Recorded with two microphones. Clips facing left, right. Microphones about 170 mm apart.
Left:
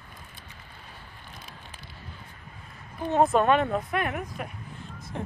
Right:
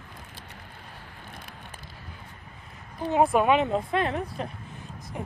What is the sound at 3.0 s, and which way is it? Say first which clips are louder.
A woman's voice: even; 10° right (ahead or behind).